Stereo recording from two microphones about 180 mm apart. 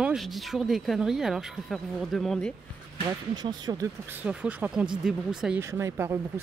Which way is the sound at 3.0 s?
25° right (ahead or behind).